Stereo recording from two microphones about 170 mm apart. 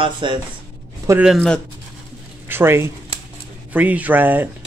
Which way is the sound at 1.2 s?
Centre (ahead or behind).